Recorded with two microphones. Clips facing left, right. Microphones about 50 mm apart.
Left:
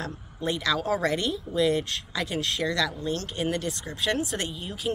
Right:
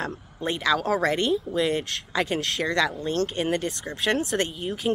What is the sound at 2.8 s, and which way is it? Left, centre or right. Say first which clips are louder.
Speech: right 3 dB; centre.